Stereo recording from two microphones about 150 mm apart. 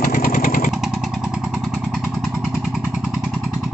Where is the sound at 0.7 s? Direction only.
Centre (ahead or behind).